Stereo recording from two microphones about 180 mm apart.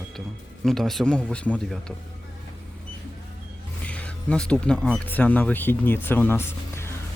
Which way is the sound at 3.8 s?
5° left (ahead or behind).